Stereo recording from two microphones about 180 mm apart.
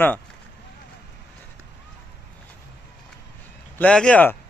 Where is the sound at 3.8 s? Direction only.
5° left (ahead or behind).